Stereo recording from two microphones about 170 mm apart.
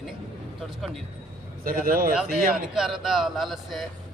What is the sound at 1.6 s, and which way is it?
Speech, 55° right (ahead or behind).